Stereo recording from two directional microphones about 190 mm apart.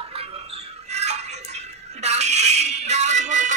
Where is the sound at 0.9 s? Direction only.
35° right (ahead or behind).